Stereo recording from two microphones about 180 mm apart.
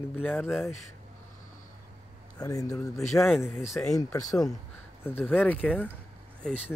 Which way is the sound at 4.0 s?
20° left (ahead or behind).